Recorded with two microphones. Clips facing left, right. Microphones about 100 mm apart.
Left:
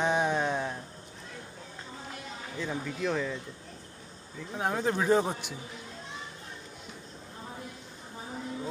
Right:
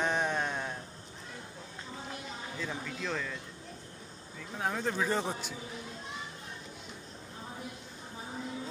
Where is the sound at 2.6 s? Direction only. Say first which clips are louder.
Left 6 dB; 10° left (ahead or behind).